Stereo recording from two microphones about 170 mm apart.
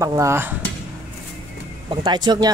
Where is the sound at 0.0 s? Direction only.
20° right (ahead or behind).